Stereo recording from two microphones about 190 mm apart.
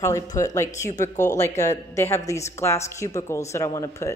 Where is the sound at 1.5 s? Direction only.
40° left (ahead or behind).